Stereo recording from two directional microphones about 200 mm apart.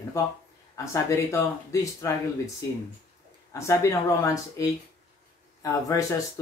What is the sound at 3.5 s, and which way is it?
Speech, 15° left (ahead or behind).